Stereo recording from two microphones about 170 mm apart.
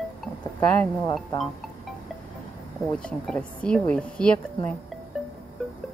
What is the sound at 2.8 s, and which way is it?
A woman's voice, 5° left (ahead or behind).